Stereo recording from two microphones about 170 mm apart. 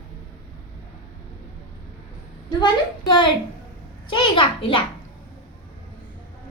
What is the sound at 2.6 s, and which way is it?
A woman's voice, 25° left (ahead or behind).